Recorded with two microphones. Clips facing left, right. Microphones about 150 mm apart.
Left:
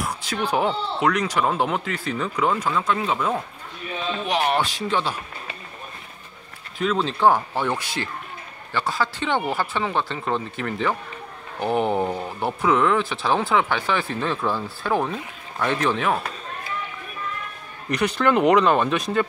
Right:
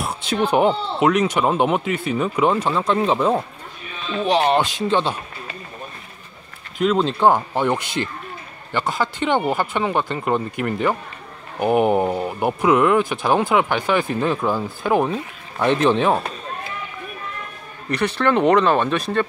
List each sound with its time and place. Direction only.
0.0 s speech: 25° right (ahead or behind)
6.8 s speech: 15° right (ahead or behind)
17.9 s speech: centre (ahead or behind)